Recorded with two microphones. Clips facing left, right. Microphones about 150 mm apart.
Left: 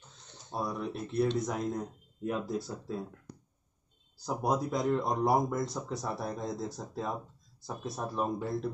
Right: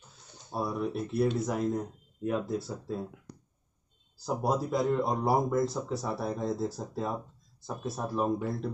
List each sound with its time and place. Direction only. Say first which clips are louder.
0.1 s speech: right 2 dB; 10° right (ahead or behind)
4.4 s speech: right 2 dB; centre (ahead or behind)